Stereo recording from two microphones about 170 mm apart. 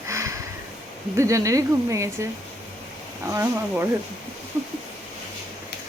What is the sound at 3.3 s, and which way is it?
Speech, 15° right (ahead or behind).